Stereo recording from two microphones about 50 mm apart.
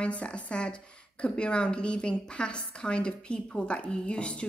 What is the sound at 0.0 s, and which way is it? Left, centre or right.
A woman's voice, left.